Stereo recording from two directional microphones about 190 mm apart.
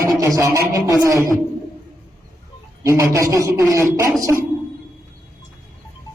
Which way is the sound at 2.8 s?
15° right (ahead or behind).